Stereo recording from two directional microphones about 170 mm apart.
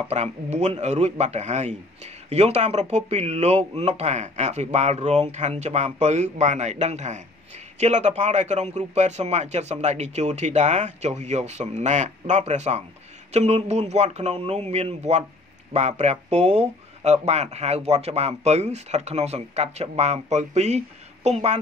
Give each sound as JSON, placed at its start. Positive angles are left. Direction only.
{"t": 0.1, "sound": "a man's voice", "side_deg": -40}